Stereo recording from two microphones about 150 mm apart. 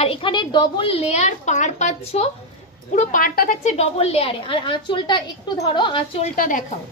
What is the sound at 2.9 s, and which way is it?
Speech, 65° left (ahead or behind).